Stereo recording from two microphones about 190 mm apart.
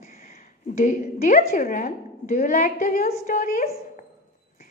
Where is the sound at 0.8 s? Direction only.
45° left (ahead or behind).